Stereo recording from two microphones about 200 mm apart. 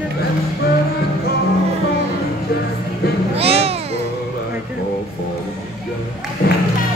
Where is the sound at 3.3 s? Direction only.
30° right (ahead or behind).